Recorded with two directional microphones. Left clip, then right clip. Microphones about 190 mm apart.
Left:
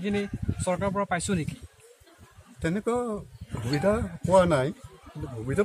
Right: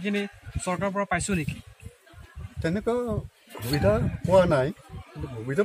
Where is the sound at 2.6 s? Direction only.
5° left (ahead or behind).